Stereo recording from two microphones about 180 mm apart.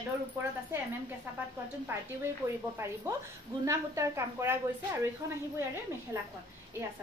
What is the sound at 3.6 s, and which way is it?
Speech, 15° right (ahead or behind).